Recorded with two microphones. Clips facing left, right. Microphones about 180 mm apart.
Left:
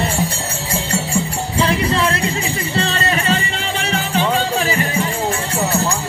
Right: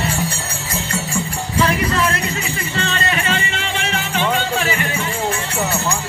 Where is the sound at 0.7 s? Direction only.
30° left (ahead or behind).